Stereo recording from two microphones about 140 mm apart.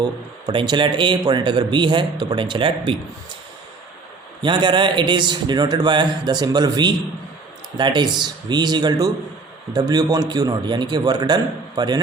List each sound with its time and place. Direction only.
0.0 s speech: 30° right (ahead or behind)
4.4 s a man's voice: 35° right (ahead or behind)